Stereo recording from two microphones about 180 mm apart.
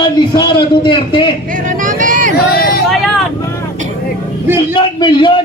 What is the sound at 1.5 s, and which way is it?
Vehicle, 50° right (ahead or behind).